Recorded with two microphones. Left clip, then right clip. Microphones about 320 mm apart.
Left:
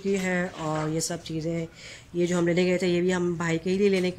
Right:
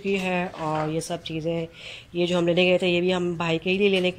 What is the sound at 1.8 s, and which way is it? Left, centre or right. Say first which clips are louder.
Speech: right 2 dB; centre.